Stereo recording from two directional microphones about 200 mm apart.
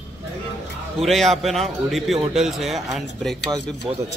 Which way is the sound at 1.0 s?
Centre (ahead or behind).